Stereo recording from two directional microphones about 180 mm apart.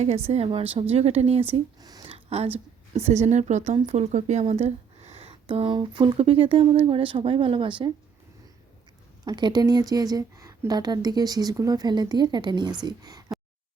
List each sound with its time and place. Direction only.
0.3 s speech: 35° right (ahead or behind)
9.2 s speech: 25° right (ahead or behind)